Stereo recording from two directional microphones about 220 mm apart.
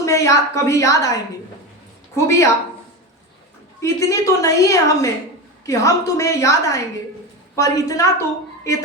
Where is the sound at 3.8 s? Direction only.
15° left (ahead or behind).